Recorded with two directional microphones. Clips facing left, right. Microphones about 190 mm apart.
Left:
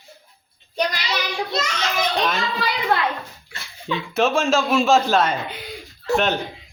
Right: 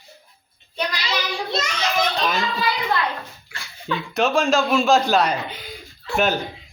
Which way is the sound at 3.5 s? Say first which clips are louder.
Right 1 dB; 35° left (ahead or behind).